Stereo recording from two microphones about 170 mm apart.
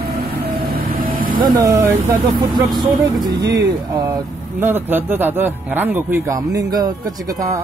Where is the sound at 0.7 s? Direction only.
60° right (ahead or behind).